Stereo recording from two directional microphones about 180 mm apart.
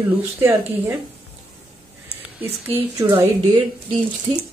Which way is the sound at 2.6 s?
15° right (ahead or behind).